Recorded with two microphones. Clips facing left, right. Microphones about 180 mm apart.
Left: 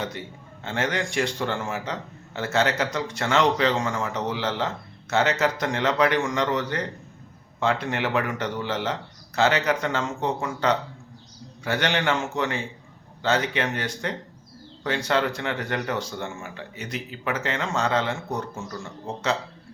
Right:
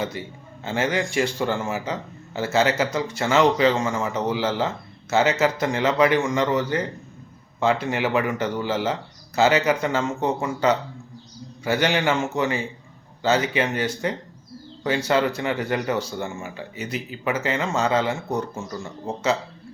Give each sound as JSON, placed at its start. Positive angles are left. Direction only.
{"t": 0.0, "sound": "a man's voice", "side_deg": -5}